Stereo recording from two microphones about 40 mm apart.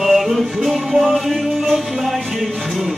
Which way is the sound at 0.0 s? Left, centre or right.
Centre.